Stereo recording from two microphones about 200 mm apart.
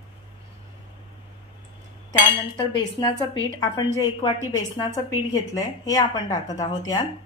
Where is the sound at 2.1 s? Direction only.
25° left (ahead or behind).